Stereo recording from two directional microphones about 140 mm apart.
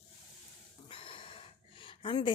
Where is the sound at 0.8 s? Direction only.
40° left (ahead or behind).